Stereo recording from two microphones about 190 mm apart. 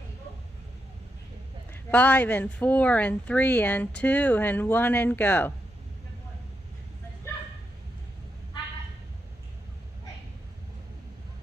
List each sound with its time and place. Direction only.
1.7 s a woman's voice: 5° left (ahead or behind)